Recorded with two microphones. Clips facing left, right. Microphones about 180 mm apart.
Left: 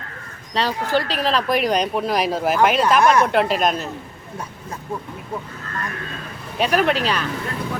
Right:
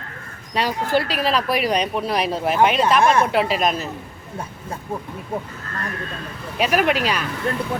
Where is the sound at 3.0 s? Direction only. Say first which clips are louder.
Left 1 dB; 30° right (ahead or behind).